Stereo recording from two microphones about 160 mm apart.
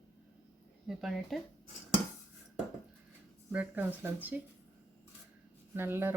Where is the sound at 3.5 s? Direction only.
10° right (ahead or behind).